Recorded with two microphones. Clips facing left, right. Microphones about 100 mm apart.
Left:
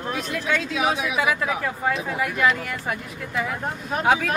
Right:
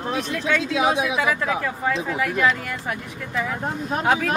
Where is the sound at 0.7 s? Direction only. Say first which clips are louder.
Right 3 dB; 25° right (ahead or behind).